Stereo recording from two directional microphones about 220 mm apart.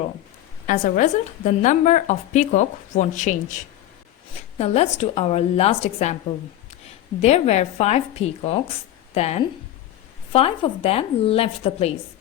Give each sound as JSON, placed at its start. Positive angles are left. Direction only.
{"t": 0.7, "sound": "a woman's voice", "side_deg": 35}
{"t": 7.2, "sound": "a woman's voice", "side_deg": 30}